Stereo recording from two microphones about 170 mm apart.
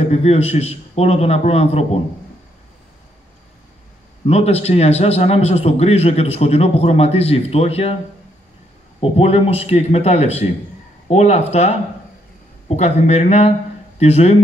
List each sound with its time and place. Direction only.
0.0 s a man's voice: 40° left (ahead or behind)
4.3 s a man's voice: 35° left (ahead or behind)
9.0 s a man's voice: 35° left (ahead or behind)